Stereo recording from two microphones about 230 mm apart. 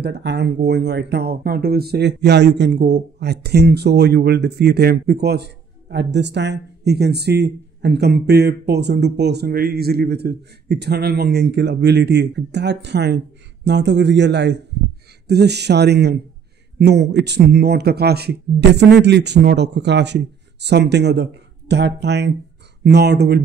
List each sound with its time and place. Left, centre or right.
0.0 s speech: right